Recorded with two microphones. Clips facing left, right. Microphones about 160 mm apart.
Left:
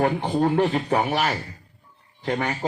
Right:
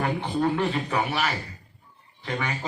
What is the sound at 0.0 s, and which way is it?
A man's voice, 40° left (ahead or behind).